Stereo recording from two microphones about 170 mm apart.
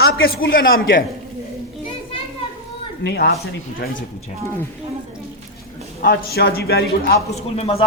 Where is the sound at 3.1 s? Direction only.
75° left (ahead or behind).